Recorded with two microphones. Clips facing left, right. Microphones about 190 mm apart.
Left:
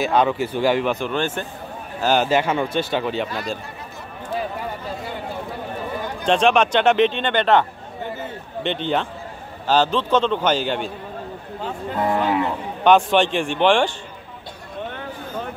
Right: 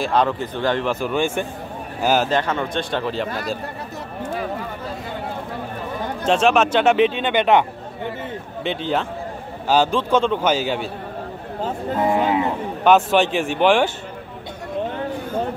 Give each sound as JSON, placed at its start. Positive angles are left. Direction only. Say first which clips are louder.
{"t": 0.0, "sound": "speech", "louder": "left 1 dB", "side_deg": 0}
{"t": 0.9, "sound": "a man's voice", "louder": "right 2 dB", "side_deg": -5}
{"t": 2.2, "sound": "speech", "louder": "left 2 dB", "side_deg": 10}
{"t": 6.2, "sound": "speech", "louder": "even", "side_deg": -5}
{"t": 8.6, "sound": "a man's voice", "louder": "even", "side_deg": -5}
{"t": 12.1, "sound": "livestock", "louder": "right 1 dB", "side_deg": -20}
{"t": 12.8, "sound": "speech", "louder": "even", "side_deg": -5}